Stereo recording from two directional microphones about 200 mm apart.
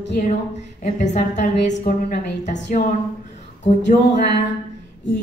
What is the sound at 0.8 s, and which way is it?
A woman's voice, 35° left (ahead or behind).